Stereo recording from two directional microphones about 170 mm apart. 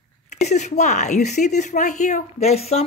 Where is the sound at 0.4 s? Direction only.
40° left (ahead or behind).